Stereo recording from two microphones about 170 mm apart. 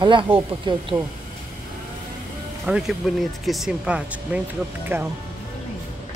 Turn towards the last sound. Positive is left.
turn(degrees=-15)  # may be behind; listen again after turning